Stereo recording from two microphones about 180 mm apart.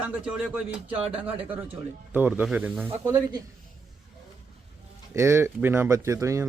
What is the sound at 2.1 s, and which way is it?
Speech, 10° right (ahead or behind).